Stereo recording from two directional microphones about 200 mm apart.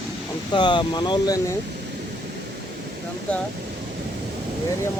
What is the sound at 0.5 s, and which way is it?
Speech, 20° left (ahead or behind).